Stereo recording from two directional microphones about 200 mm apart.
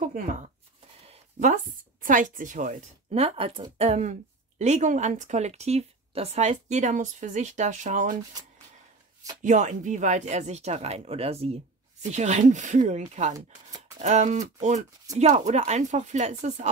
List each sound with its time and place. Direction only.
0.0 s a sound: 40° right (ahead or behind)
1.0 s a woman's voice: 35° right (ahead or behind)
9.4 s a woman's voice: 40° right (ahead or behind)